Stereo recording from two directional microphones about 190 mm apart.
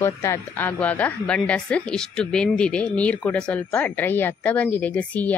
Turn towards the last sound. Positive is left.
turn(degrees=10)  # may be behind; listen again after turning